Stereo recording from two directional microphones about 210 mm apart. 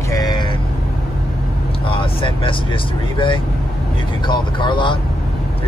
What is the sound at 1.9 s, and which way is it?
Speech, 25° left (ahead or behind).